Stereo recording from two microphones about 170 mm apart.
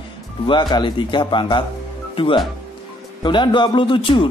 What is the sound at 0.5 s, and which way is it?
Speech, 25° left (ahead or behind).